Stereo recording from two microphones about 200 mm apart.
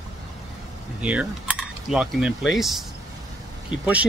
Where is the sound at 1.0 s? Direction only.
5° right (ahead or behind).